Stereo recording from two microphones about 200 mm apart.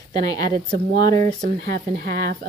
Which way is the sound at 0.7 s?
45° right (ahead or behind).